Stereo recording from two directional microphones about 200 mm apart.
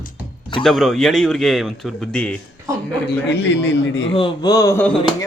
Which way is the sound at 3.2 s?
60° left (ahead or behind).